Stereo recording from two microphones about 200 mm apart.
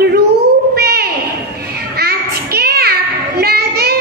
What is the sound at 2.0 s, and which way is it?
Child singing, 50° right (ahead or behind).